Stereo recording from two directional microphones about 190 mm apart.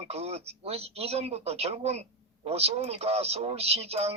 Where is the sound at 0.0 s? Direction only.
35° right (ahead or behind).